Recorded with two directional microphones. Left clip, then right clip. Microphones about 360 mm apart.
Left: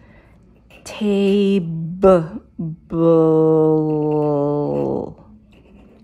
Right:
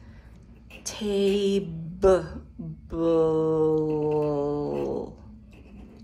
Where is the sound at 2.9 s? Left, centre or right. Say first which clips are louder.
Left 9 dB; left.